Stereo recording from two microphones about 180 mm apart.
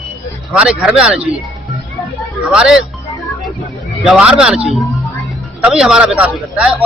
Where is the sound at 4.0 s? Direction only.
5° right (ahead or behind).